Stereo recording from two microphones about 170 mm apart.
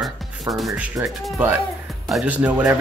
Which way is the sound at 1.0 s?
10° right (ahead or behind).